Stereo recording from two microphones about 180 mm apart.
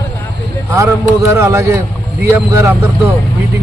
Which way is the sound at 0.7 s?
15° right (ahead or behind).